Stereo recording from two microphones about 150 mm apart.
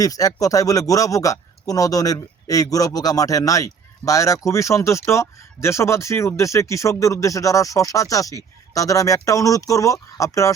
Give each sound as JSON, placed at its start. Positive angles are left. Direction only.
{"t": 0.0, "sound": "speech", "side_deg": 25}